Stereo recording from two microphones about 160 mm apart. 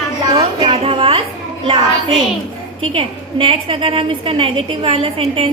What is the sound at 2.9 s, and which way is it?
A woman's voice, 35° right (ahead or behind).